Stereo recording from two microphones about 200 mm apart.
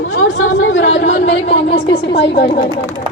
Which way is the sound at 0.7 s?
65° left (ahead or behind).